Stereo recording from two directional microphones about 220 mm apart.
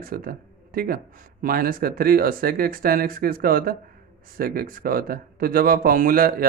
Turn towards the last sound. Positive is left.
turn(degrees=-40)  # may be behind; listen again after turning